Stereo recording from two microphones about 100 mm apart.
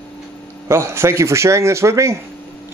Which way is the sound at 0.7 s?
25° right (ahead or behind).